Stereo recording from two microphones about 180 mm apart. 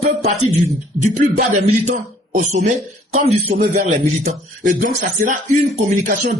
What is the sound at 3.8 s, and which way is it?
Speech, 40° right (ahead or behind).